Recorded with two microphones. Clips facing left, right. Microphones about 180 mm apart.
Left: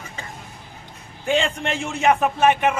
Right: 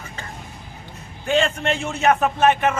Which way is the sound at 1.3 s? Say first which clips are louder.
Right 2 dB; 15° left (ahead or behind).